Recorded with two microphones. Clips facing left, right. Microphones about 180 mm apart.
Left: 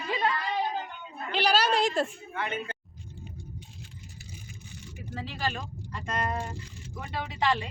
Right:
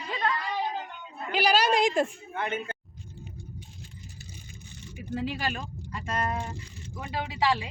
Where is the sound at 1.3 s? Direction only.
10° right (ahead or behind).